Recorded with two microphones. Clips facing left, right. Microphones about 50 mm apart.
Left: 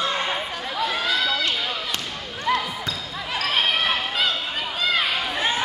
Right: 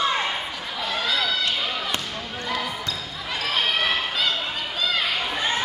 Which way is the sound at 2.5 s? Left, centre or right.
Centre.